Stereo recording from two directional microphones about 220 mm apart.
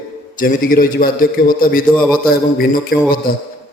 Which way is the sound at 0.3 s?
40° left (ahead or behind).